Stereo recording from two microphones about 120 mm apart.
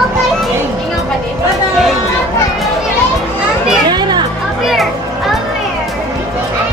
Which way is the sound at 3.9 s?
35° right (ahead or behind).